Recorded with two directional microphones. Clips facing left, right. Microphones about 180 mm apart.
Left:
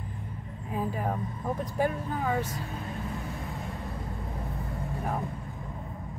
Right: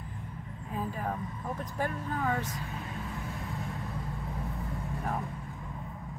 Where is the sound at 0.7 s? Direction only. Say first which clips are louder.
Left 4 dB; 20° left (ahead or behind).